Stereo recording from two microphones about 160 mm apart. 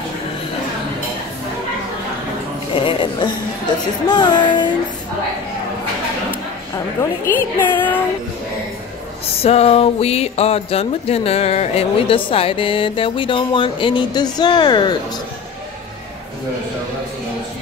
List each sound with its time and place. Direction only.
2.8 s music: 30° left (ahead or behind)
7.3 s music: 10° left (ahead or behind)
9.4 s speech: 40° left (ahead or behind)